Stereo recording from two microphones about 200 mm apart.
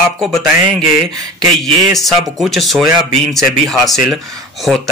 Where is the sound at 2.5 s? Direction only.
Centre (ahead or behind).